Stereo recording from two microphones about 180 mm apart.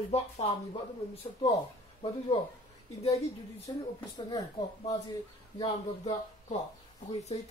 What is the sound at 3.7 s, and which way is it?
Speech, 25° left (ahead or behind).